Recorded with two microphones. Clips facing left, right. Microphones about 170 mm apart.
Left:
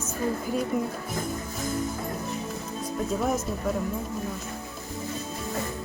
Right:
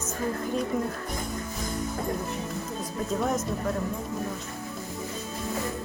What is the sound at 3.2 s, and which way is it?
Speech, 5° left (ahead or behind).